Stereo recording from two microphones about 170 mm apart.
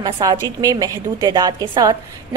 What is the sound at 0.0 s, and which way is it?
A woman's voice, 25° right (ahead or behind).